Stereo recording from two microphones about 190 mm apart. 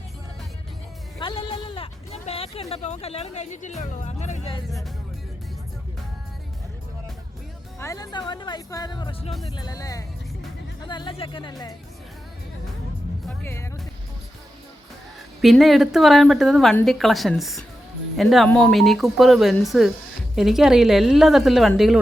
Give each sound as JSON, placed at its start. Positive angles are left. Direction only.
{"t": 1.2, "sound": "speech", "side_deg": 25}
{"t": 7.8, "sound": "speech", "side_deg": 15}
{"t": 13.2, "sound": "speech", "side_deg": 10}
{"t": 15.4, "sound": "speech", "side_deg": 0}